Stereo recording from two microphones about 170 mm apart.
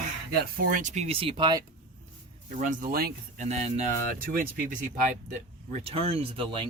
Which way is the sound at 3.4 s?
40° right (ahead or behind).